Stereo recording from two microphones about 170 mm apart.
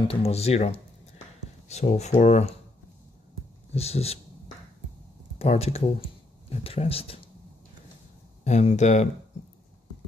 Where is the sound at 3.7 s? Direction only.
35° left (ahead or behind).